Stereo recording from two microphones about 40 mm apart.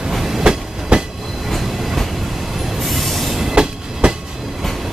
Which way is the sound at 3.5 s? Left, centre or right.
Right.